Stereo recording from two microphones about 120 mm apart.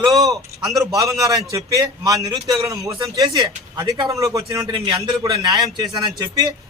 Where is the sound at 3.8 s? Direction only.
40° right (ahead or behind).